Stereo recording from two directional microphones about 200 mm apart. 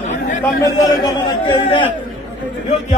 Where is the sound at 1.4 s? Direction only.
25° left (ahead or behind).